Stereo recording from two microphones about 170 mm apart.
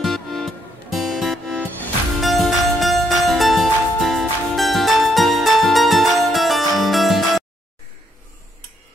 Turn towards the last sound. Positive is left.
turn(degrees=0)  # may be behind; listen again after turning